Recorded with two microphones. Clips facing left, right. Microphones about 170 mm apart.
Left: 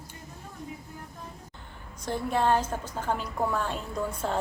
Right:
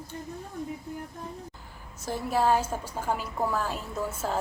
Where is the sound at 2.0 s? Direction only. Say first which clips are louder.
Even; 5° right (ahead or behind).